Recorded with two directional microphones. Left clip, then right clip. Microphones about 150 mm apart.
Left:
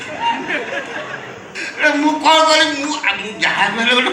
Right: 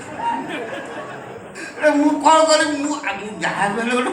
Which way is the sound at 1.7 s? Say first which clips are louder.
Left 1 dB; 50° right (ahead or behind).